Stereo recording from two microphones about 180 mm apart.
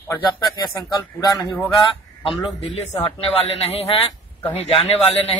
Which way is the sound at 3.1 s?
35° left (ahead or behind).